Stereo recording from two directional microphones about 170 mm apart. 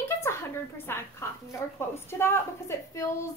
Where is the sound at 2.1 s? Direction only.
15° left (ahead or behind).